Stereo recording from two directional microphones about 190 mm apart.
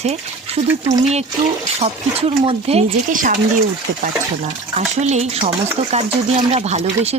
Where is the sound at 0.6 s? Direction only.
20° right (ahead or behind).